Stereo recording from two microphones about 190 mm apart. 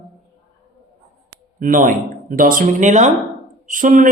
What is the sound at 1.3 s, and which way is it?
Speech, 40° right (ahead or behind).